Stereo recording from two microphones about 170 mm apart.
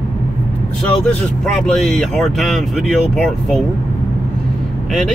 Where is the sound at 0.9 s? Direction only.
Centre (ahead or behind).